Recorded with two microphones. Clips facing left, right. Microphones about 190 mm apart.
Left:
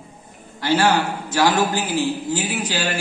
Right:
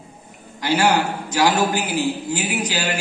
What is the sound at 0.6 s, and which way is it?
A man's voice, 15° right (ahead or behind).